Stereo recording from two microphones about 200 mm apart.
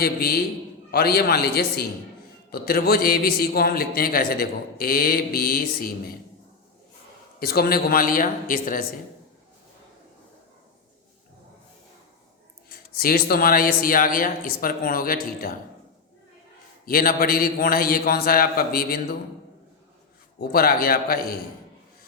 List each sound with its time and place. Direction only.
0.0 s a man's voice: 50° left (ahead or behind)
7.3 s a man's voice: 50° left (ahead or behind)
12.6 s a man's voice: 50° left (ahead or behind)
16.8 s a man's voice: 45° left (ahead or behind)
20.4 s a man's voice: 50° left (ahead or behind)